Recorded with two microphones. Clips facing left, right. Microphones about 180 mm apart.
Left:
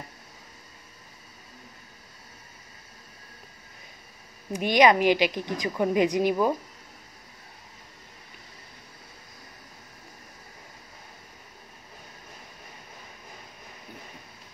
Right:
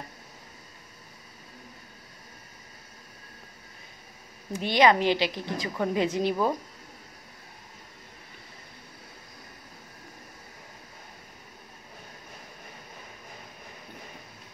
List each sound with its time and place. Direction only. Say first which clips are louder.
4.5 s a woman's voice: left 2 dB; 15° left (ahead or behind)